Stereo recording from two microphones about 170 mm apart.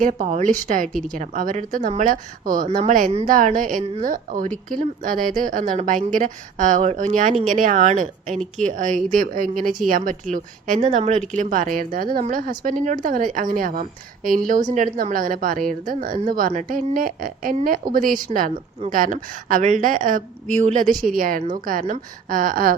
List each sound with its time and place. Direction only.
0.0 s a woman's voice: 50° right (ahead or behind)